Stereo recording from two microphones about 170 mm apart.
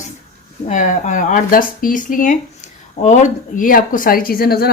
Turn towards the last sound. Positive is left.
turn(degrees=65)  # may be behind; listen again after turning